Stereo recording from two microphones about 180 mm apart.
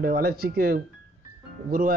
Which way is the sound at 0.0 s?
55° right (ahead or behind).